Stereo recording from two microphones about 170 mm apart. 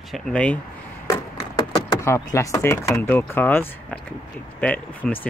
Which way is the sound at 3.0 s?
10° left (ahead or behind).